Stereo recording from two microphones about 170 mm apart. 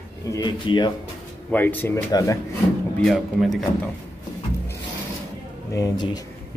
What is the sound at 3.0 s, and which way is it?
Speech, centre (ahead or behind).